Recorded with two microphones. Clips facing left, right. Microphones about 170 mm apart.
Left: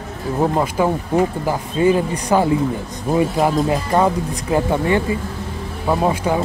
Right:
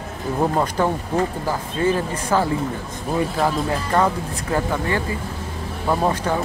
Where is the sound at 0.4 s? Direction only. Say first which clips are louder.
Left 2 dB; 10° left (ahead or behind).